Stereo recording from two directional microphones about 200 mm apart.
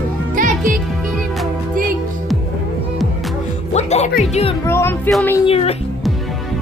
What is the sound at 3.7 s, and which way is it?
Music, 35° left (ahead or behind).